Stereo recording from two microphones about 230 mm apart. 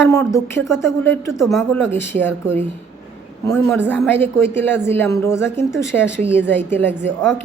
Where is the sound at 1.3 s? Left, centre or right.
Centre.